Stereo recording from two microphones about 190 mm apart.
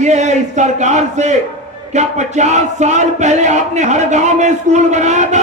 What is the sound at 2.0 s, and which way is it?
Battle cry, 40° right (ahead or behind).